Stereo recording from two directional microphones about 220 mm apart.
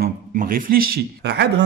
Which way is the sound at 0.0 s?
40° right (ahead or behind).